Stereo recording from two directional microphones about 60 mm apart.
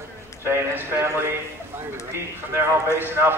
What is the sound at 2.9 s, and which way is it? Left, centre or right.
Speech, right.